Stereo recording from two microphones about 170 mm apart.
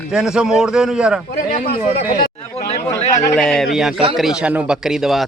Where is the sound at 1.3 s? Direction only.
55° left (ahead or behind).